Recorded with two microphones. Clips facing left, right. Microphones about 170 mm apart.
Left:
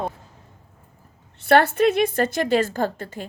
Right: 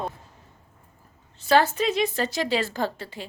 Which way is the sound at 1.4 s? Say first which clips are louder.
Left 4 dB; 60° left (ahead or behind).